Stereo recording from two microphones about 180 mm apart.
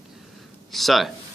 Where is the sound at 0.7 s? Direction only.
Centre (ahead or behind).